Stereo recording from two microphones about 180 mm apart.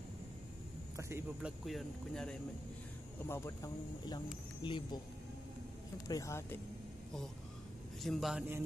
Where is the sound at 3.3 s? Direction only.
15° left (ahead or behind).